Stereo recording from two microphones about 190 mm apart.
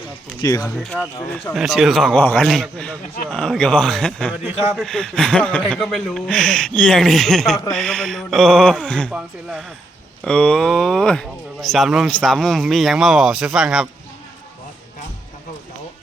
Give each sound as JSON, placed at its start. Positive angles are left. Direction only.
{"t": 0.4, "sound": "speech", "side_deg": 20}
{"t": 1.5, "sound": "speech", "side_deg": 0}